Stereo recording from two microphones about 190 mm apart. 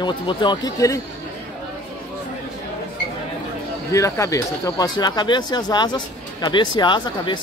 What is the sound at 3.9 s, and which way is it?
Speech, 15° left (ahead or behind).